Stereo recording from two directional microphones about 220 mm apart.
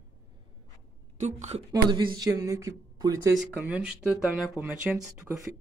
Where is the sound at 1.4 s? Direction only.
30° right (ahead or behind).